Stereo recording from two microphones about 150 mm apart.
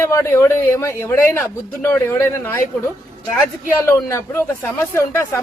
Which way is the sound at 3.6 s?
15° left (ahead or behind).